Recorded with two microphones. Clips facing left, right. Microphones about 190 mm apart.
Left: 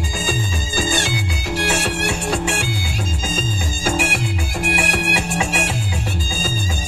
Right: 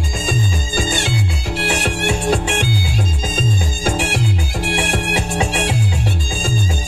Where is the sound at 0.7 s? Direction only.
25° right (ahead or behind).